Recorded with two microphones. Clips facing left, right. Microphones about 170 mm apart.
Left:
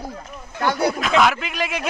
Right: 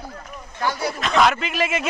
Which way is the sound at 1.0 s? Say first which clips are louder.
Left 1 dB; centre (ahead or behind).